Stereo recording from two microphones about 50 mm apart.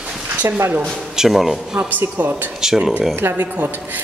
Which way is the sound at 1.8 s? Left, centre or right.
Right.